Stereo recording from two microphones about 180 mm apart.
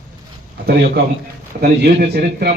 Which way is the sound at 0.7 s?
65° right (ahead or behind).